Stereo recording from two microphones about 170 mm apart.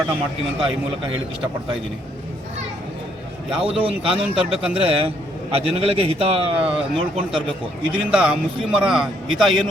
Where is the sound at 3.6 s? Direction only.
35° right (ahead or behind).